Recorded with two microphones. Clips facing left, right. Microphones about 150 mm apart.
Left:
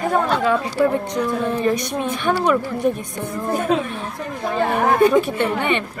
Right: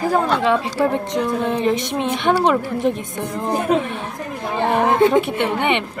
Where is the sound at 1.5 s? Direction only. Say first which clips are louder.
Right 1 dB; 20° right (ahead or behind).